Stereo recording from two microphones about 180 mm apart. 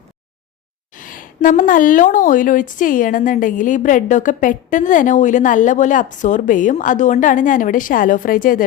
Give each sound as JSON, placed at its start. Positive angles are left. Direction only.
{"t": 0.9, "sound": "a woman's voice", "side_deg": 50}